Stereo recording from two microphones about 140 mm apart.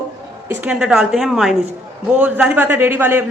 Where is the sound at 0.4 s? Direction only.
10° right (ahead or behind).